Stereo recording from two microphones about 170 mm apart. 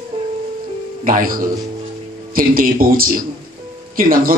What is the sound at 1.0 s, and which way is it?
A man's voice, 55° right (ahead or behind).